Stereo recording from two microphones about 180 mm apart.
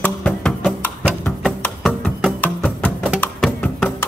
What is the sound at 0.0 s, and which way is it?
Music, 5° left (ahead or behind).